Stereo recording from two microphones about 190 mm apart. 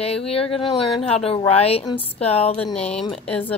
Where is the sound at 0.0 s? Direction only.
30° left (ahead or behind).